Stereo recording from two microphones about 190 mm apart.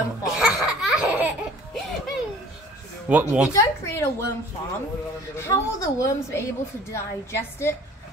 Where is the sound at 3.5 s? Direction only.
15° left (ahead or behind).